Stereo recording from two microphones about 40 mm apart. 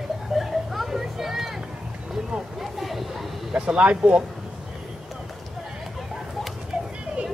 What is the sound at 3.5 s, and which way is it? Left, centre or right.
Vehicle, right.